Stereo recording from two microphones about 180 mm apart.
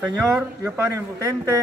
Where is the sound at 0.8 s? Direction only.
20° right (ahead or behind).